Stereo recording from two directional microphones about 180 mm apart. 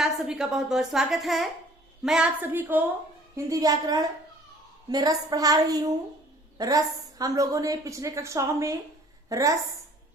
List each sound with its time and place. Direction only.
0.0 s a woman's voice: centre (ahead or behind); by 9.6 s 20° right (ahead or behind)